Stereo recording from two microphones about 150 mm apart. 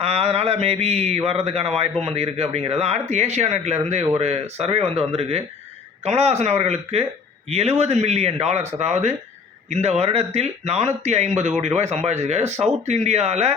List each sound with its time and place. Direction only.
0.0 s speech: 45° right (ahead or behind)